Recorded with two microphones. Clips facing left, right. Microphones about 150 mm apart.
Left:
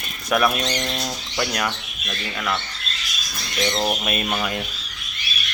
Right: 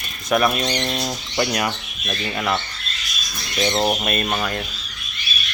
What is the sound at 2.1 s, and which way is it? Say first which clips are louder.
Speech: right 4 dB; 30° right (ahead or behind).